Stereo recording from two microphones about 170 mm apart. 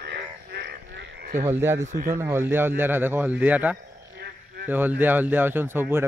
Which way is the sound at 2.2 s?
15° right (ahead or behind).